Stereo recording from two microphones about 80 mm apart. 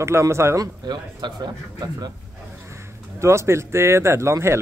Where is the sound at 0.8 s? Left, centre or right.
Right.